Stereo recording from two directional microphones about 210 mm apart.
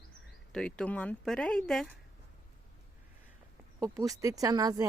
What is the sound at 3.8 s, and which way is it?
Speech, 15° right (ahead or behind).